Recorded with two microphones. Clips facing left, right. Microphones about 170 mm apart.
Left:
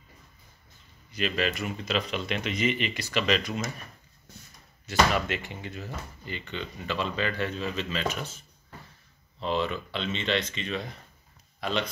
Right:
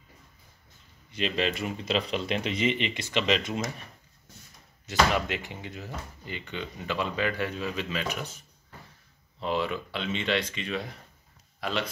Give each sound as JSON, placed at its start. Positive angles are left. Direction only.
{"t": 1.1, "sound": "a man's voice", "side_deg": -25}
{"t": 4.8, "sound": "speech", "side_deg": -15}